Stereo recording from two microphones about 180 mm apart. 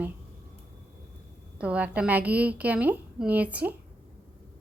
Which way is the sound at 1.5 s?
5° right (ahead or behind).